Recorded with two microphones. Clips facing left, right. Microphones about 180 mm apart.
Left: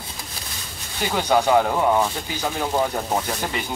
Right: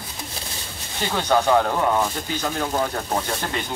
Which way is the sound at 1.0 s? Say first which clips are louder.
Left 1 dB; 10° left (ahead or behind).